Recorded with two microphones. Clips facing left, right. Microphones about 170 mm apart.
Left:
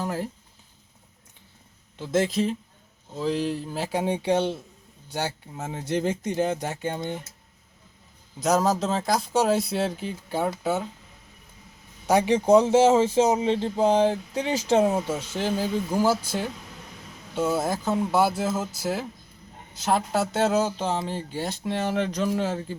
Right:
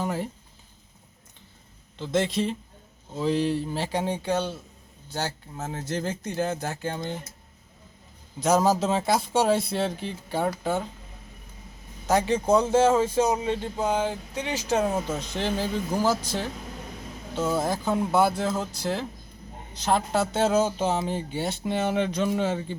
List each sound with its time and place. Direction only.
0.0 s speech: centre (ahead or behind)
2.0 s speech: 5° left (ahead or behind)
8.4 s speech: centre (ahead or behind)
12.0 s a man's voice: 15° left (ahead or behind); by 14.8 s 30° left (ahead or behind)
14.8 s speech: 15° left (ahead or behind)